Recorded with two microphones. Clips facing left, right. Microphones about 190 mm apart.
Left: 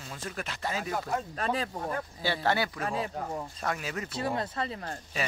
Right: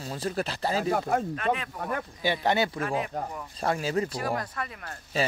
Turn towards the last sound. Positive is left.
turn(degrees=25)  # may be behind; listen again after turning